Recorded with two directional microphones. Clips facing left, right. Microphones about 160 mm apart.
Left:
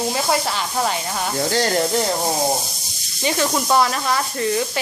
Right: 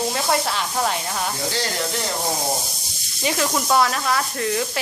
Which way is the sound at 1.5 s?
45° left (ahead or behind).